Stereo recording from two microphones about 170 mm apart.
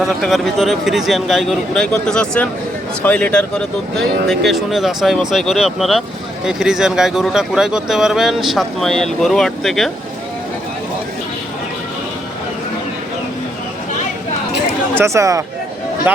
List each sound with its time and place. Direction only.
0.0 s speech: centre (ahead or behind)
14.9 s speech: 15° right (ahead or behind)